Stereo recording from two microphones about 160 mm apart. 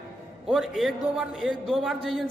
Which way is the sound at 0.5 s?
Centre (ahead or behind).